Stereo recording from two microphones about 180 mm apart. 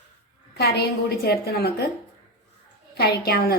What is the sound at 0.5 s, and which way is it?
A woman's voice, 65° left (ahead or behind).